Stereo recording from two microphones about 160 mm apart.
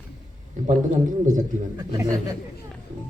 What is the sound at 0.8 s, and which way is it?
Speech, 50° right (ahead or behind).